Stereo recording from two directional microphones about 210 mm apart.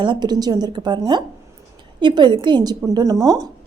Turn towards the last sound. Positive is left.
turn(degrees=-15)  # may be behind; listen again after turning